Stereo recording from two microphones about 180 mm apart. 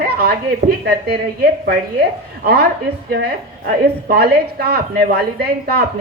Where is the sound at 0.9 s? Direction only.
65° right (ahead or behind).